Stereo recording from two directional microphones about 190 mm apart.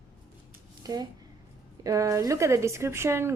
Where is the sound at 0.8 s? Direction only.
20° right (ahead or behind).